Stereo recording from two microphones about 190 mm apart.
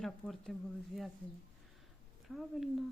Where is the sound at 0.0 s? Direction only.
Centre (ahead or behind).